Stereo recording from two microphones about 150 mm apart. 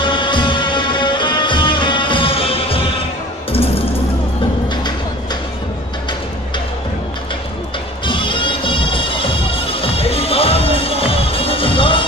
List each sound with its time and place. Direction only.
0.0 s music: 30° left (ahead or behind)
8.0 s music: 35° left (ahead or behind)